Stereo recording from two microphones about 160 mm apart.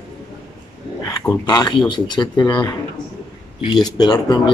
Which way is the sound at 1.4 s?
25° left (ahead or behind).